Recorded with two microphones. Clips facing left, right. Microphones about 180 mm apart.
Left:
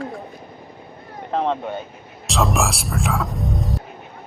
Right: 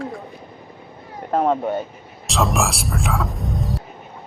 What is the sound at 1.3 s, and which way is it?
Speech, 10° right (ahead or behind).